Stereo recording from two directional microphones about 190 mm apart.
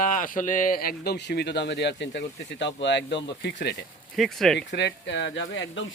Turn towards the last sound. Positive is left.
turn(degrees=80)